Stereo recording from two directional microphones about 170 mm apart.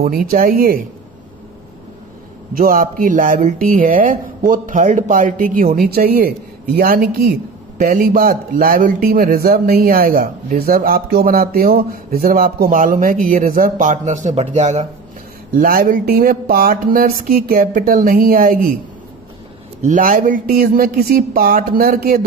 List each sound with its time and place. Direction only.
0.0 s speech: 60° right (ahead or behind)
2.5 s speech: 55° right (ahead or behind)
15.5 s speech: 60° right (ahead or behind)
19.8 s speech: 50° right (ahead or behind)